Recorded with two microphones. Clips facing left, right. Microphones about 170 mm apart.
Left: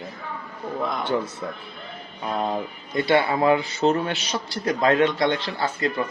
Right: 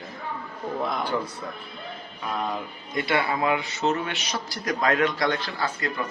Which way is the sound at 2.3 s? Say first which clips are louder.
Left 4 dB; 30° left (ahead or behind).